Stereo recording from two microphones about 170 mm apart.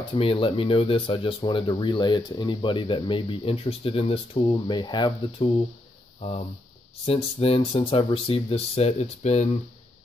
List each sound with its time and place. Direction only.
0.1 s speech: 30° left (ahead or behind)
6.1 s speech: 40° left (ahead or behind)